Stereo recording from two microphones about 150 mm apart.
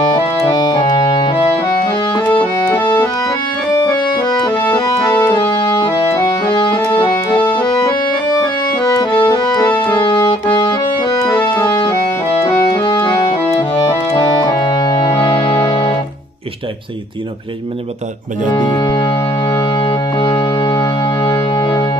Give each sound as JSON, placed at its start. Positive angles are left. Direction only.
{"t": 0.6, "sound": "music", "side_deg": 25}
{"t": 0.9, "sound": "organ", "side_deg": 40}
{"t": 2.8, "sound": "accordion", "side_deg": 30}
{"t": 8.8, "sound": "music", "side_deg": 30}
{"t": 12.7, "sound": "accordion", "side_deg": 30}
{"t": 14.1, "sound": "music", "side_deg": 25}
{"t": 18.5, "sound": "music", "side_deg": 30}